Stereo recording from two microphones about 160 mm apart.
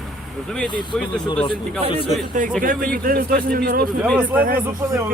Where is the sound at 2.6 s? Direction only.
60° right (ahead or behind).